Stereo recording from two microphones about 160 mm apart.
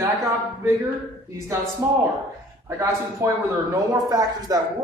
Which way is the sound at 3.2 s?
15° right (ahead or behind).